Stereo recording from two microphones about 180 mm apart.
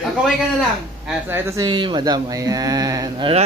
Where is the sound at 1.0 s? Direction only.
15° right (ahead or behind).